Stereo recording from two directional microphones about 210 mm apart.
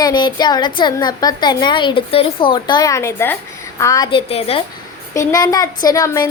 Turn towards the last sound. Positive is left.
turn(degrees=15)  # may be behind; listen again after turning